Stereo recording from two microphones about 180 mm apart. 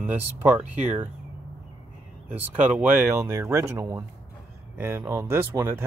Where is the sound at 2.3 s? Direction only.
10° right (ahead or behind).